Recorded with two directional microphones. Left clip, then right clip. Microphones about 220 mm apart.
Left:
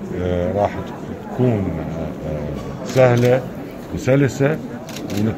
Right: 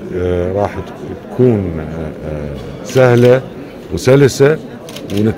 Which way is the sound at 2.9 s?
50° right (ahead or behind).